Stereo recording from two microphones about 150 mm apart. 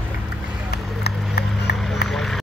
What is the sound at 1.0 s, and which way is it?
Run, 90° left.